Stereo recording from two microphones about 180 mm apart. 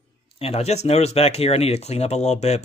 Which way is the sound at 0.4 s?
35° left (ahead or behind).